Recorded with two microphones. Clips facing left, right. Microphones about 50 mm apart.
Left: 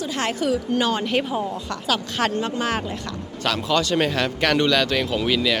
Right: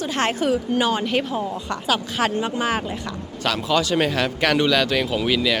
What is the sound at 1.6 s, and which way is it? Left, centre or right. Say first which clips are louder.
Speech: right 1 dB; centre.